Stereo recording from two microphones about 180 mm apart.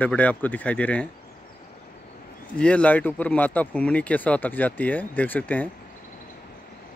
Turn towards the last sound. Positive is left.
turn(degrees=10)  # may be behind; listen again after turning